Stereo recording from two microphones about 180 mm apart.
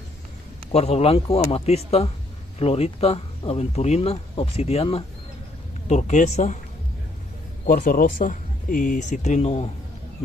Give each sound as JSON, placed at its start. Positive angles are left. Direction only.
{"t": 0.7, "sound": "speech", "side_deg": 35}
{"t": 7.6, "sound": "speech", "side_deg": 50}